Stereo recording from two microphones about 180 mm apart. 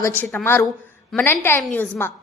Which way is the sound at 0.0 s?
10° left (ahead or behind).